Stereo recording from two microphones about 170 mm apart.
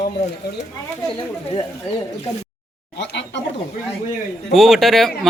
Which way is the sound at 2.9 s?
90° left.